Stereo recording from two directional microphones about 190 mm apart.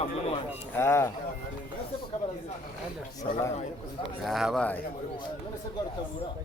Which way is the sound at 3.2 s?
25° left (ahead or behind).